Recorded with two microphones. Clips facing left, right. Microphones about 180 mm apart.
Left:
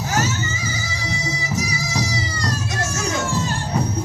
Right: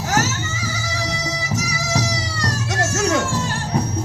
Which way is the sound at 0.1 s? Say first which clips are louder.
Right 1 dB; 80° right.